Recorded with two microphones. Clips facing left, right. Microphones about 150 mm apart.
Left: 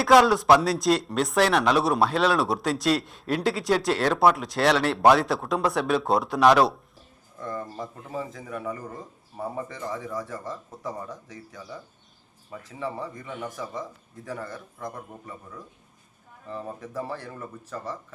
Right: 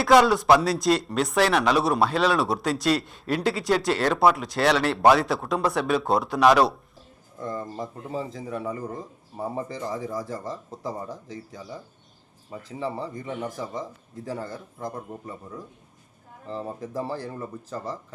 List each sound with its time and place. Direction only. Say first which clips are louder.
0.0 s speech: even; centre (ahead or behind)
7.3 s speech: right 2 dB; 30° right (ahead or behind)